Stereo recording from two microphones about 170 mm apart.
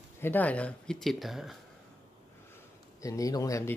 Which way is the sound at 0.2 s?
10° left (ahead or behind).